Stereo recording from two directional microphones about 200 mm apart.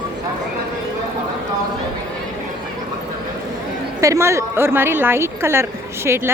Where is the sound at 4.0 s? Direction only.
15° right (ahead or behind).